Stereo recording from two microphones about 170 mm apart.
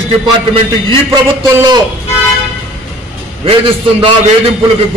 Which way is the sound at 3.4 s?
30° right (ahead or behind).